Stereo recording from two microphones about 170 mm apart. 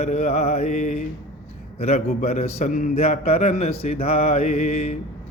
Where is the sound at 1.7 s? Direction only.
40° left (ahead or behind).